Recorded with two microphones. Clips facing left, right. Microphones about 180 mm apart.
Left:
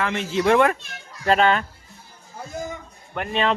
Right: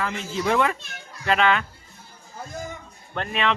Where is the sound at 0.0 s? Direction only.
70° left (ahead or behind).